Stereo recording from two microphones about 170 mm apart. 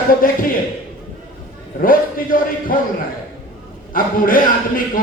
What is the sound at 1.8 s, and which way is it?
Speech, 55° left (ahead or behind).